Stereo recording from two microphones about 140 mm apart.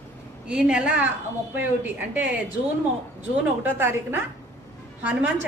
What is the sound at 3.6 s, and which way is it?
Speech, 15° right (ahead or behind).